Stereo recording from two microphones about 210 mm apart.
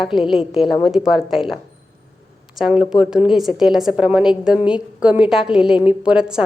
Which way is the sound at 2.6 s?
5° right (ahead or behind).